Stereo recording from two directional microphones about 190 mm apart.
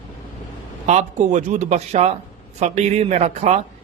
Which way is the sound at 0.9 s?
40° right (ahead or behind).